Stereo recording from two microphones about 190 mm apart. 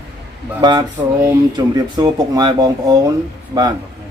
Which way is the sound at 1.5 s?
20° right (ahead or behind).